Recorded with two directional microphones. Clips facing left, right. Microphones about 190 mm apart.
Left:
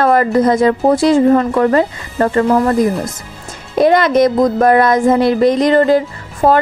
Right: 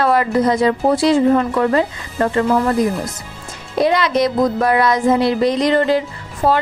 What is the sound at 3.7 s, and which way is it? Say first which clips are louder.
Speech: left 5 dB; 50° left (ahead or behind).